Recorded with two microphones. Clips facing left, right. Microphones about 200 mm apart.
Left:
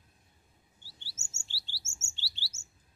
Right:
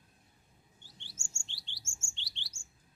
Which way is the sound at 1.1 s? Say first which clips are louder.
Right 3 dB; 20° left (ahead or behind).